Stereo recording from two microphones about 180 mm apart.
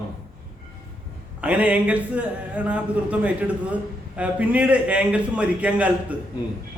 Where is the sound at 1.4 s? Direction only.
10° right (ahead or behind).